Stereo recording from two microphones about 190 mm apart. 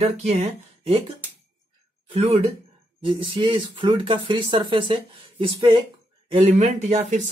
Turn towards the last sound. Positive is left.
turn(degrees=-40)  # may be behind; listen again after turning